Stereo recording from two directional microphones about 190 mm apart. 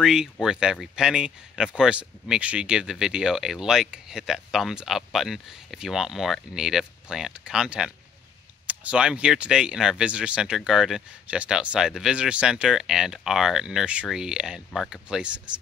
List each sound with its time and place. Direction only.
0.0 s speech: 5° right (ahead or behind)